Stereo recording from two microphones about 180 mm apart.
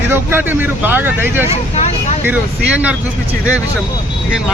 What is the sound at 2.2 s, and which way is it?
Speech, 10° right (ahead or behind).